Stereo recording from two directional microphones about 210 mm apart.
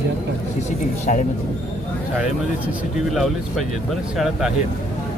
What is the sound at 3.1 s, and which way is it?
Speech, centre (ahead or behind).